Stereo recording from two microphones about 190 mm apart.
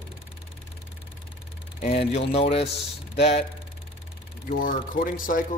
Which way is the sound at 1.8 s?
35° left (ahead or behind).